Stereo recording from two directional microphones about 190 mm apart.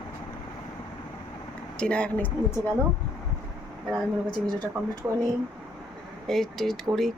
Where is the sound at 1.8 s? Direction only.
5° left (ahead or behind).